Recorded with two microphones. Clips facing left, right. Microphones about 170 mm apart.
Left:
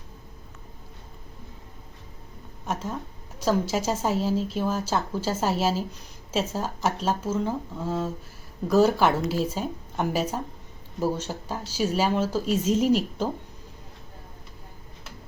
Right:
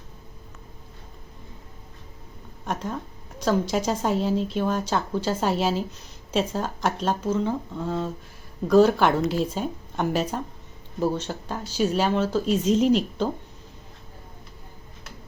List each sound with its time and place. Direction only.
2.6 s speech: 5° left (ahead or behind)